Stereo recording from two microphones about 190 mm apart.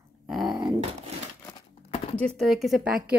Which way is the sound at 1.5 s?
25° left (ahead or behind).